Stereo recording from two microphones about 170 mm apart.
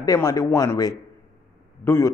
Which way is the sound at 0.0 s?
20° left (ahead or behind).